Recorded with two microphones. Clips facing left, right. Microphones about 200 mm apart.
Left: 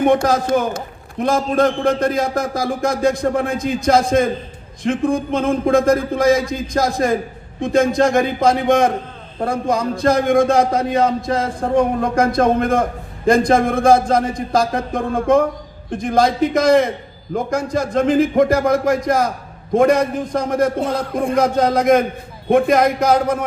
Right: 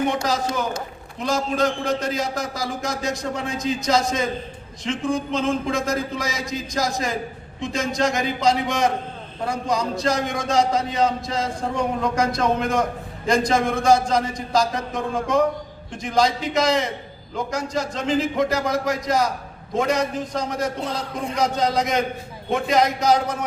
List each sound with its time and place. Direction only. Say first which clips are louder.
0.0 s a man's voice: left 7 dB; 55° left (ahead or behind)